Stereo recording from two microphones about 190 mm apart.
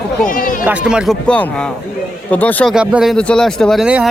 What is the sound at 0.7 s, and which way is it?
A man's voice, 5° right (ahead or behind).